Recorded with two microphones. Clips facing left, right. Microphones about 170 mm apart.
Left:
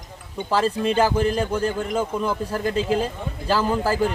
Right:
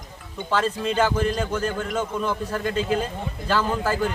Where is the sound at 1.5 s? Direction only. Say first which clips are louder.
Left 2 dB; 30° left (ahead or behind).